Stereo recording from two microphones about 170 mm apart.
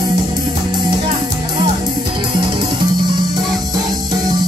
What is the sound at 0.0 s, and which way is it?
Music, 25° right (ahead or behind).